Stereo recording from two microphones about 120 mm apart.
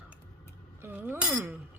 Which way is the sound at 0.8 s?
20° right (ahead or behind).